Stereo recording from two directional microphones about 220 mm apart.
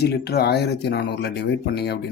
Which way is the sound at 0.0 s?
45° left (ahead or behind).